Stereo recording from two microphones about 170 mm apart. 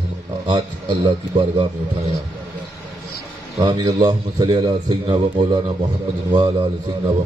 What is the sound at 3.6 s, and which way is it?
A man's voice, 25° right (ahead or behind).